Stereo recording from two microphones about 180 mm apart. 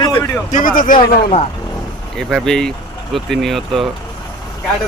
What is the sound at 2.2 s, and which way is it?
Speech, centre (ahead or behind).